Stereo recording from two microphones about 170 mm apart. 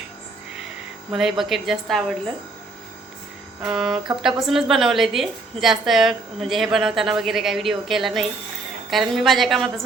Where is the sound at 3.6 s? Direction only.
5° right (ahead or behind).